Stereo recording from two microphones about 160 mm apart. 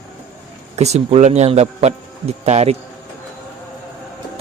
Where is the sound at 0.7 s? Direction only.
45° right (ahead or behind).